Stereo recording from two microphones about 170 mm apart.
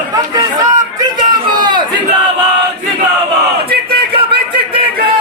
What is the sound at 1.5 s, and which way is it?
Crowd, 25° right (ahead or behind).